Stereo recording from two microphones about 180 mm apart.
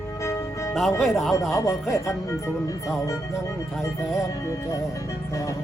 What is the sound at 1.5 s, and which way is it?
Speech, 15° left (ahead or behind).